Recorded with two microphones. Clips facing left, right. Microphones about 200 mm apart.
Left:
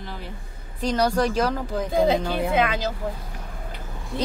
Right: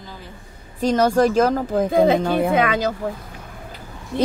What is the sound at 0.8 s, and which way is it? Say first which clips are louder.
A woman's voice: right 5 dB; 45° right (ahead or behind).